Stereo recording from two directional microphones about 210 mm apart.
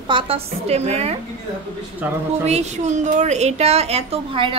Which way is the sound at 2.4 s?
35° right (ahead or behind).